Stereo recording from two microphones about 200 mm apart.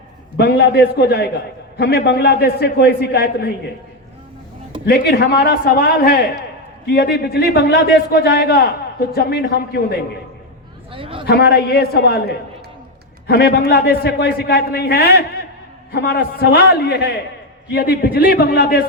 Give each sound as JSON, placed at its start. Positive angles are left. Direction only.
{"t": 0.3, "sound": "a man's voice", "side_deg": 55}
{"t": 4.9, "sound": "a man's voice", "side_deg": 55}
{"t": 10.9, "sound": "a man's voice", "side_deg": -25}
{"t": 11.3, "sound": "a man's voice", "side_deg": 55}